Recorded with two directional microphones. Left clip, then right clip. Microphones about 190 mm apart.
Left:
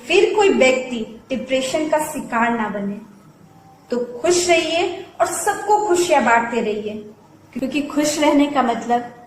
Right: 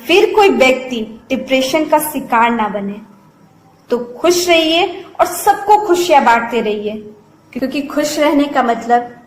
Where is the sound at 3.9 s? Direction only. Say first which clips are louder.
Right 5 dB; 25° right (ahead or behind).